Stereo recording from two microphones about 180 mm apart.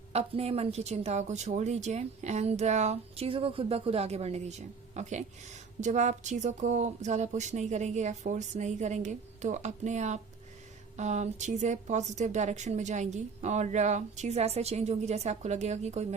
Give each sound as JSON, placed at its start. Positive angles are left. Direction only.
{"t": 0.1, "sound": "speech", "side_deg": -35}